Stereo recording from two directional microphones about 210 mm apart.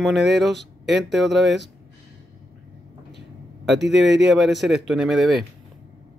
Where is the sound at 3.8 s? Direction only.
55° right (ahead or behind).